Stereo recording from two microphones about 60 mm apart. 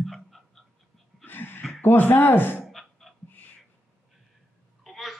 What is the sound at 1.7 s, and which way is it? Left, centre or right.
Speech, left.